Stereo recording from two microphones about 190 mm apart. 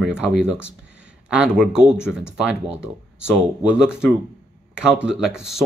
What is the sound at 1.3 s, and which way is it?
Speech, 5° right (ahead or behind).